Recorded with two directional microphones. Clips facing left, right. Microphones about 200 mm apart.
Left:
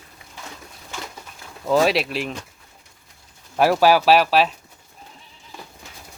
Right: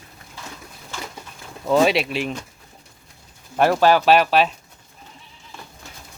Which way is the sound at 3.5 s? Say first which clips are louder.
Even; 5° left (ahead or behind).